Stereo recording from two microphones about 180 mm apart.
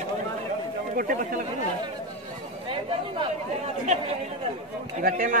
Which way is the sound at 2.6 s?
30° right (ahead or behind).